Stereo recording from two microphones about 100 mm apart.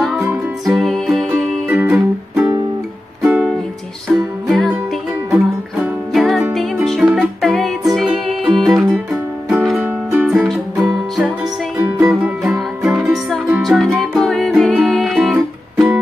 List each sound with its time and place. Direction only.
0.7 s music: centre (ahead or behind)
1.7 s music: 15° right (ahead or behind)
3.3 s music: 5° right (ahead or behind)